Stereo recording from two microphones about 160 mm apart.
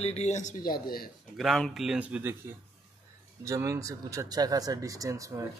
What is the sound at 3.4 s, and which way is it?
Speech, 20° right (ahead or behind).